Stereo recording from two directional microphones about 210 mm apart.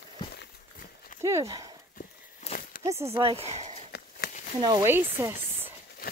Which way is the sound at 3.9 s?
45° left (ahead or behind).